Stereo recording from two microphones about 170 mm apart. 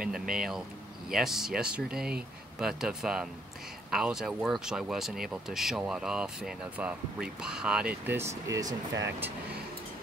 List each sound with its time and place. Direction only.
0.1 s speech: 5° right (ahead or behind)
8.5 s speech: 20° right (ahead or behind)